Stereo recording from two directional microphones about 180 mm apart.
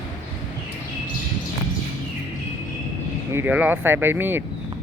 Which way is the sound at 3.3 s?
10° right (ahead or behind).